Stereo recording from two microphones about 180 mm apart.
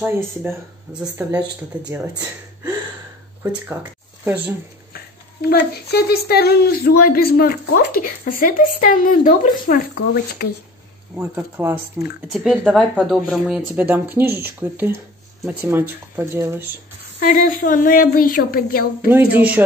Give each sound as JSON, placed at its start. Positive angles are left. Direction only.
{"t": 0.0, "sound": "speech", "side_deg": -10}
{"t": 3.4, "sound": "speech", "side_deg": -10}
{"t": 5.4, "sound": "a woman's voice", "side_deg": 65}
{"t": 11.1, "sound": "speech", "side_deg": -10}
{"t": 12.3, "sound": "speech", "side_deg": 0}
{"t": 17.2, "sound": "speech", "side_deg": 50}
{"t": 19.0, "sound": "speech", "side_deg": -10}